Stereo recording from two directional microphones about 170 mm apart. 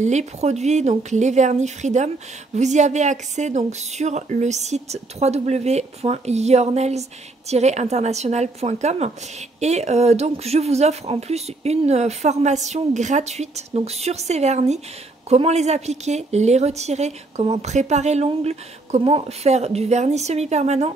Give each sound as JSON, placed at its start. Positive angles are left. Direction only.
{"t": 0.0, "sound": "a woman's voice", "side_deg": -40}